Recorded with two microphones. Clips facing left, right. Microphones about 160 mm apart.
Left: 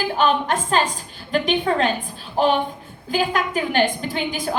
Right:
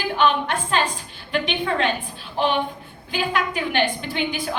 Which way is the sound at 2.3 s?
40° left (ahead or behind).